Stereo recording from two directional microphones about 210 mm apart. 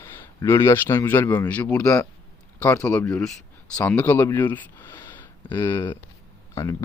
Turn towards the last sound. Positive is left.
turn(degrees=15)  # may be behind; listen again after turning